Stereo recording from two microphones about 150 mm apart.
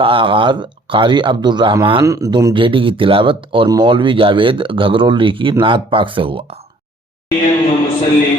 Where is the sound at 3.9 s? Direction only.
35° right (ahead or behind).